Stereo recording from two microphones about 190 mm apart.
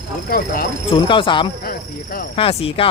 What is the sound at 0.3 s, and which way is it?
Speech, 50° left (ahead or behind).